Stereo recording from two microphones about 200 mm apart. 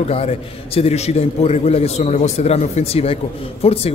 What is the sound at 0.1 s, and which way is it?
A man's voice, 30° left (ahead or behind).